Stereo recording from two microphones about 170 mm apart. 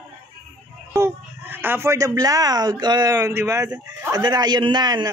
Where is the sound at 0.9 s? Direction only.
10° right (ahead or behind).